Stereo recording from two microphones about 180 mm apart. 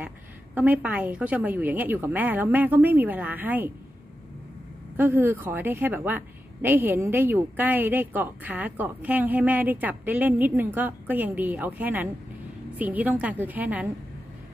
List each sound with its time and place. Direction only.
0.6 s a woman's voice: 10° right (ahead or behind)
4.9 s a woman's voice: 10° right (ahead or behind)